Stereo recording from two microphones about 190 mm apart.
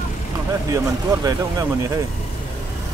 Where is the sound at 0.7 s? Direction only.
20° right (ahead or behind).